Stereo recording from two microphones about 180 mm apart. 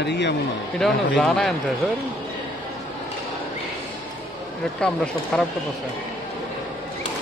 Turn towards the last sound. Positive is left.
turn(degrees=5)  # may be behind; listen again after turning